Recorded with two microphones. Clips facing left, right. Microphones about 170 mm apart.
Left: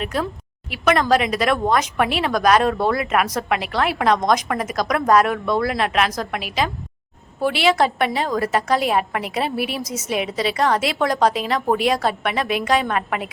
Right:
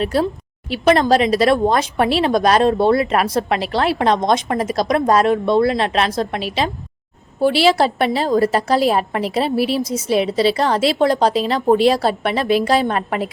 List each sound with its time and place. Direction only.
0.0 s a woman's voice: 35° right (ahead or behind)